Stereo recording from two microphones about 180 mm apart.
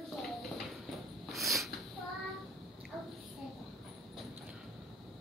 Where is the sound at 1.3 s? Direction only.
Centre (ahead or behind).